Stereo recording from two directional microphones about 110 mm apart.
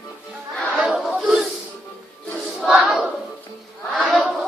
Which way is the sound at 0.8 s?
5° right (ahead or behind).